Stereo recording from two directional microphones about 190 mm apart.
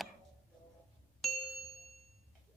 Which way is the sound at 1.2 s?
Centre (ahead or behind).